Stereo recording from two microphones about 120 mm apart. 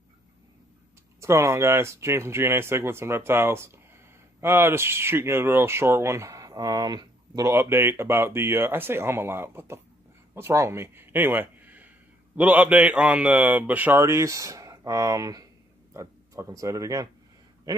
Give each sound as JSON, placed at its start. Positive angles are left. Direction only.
{"t": 1.2, "sound": "speech", "side_deg": -25}
{"t": 7.5, "sound": "a man's voice", "side_deg": -20}